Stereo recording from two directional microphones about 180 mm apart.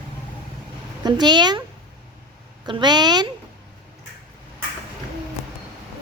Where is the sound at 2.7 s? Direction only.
25° right (ahead or behind).